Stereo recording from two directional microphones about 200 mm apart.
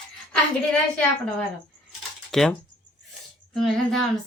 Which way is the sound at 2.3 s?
Centre (ahead or behind).